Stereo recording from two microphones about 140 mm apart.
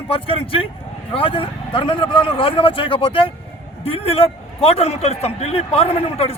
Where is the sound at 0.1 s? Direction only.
40° left (ahead or behind).